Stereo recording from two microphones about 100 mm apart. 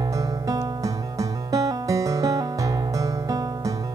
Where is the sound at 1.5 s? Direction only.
35° right (ahead or behind).